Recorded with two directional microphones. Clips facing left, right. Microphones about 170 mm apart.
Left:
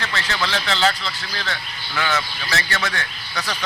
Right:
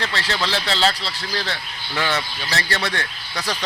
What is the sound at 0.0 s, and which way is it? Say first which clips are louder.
A man's voice: right 1 dB; 30° right (ahead or behind).